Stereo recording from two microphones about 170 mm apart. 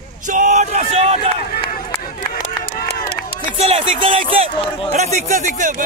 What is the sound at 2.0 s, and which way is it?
Run, 60° left (ahead or behind).